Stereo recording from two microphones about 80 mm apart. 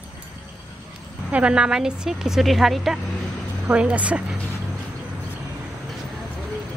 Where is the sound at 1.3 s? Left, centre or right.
Centre.